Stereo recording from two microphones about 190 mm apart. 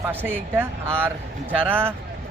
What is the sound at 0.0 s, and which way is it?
A man's voice, 10° right (ahead or behind).